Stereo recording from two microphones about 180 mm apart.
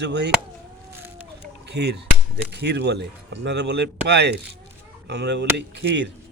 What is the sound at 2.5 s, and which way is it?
Speech, 65° right (ahead or behind).